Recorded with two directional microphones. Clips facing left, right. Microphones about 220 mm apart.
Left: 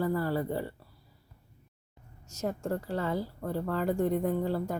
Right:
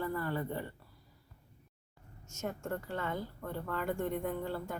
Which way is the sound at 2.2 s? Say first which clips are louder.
Left 6 dB; 35° left (ahead or behind).